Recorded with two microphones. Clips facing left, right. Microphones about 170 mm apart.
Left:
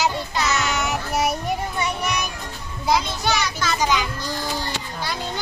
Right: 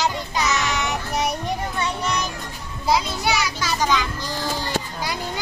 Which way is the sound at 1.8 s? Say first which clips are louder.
Even; 10° left (ahead or behind).